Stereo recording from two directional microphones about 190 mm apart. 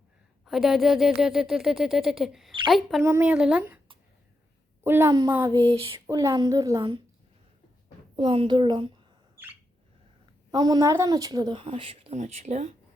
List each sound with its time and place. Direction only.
0.4 s speech: centre (ahead or behind)
3.0 s a woman's voice: 10° right (ahead or behind)
4.8 s a woman's voice: 10° right (ahead or behind); by 6.0 s 30° right (ahead or behind)
6.1 s a woman's voice: 15° right (ahead or behind)
8.1 s speech: 25° right (ahead or behind)
10.5 s speech: 20° right (ahead or behind)